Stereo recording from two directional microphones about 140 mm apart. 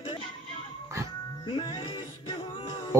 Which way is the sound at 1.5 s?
30° left (ahead or behind).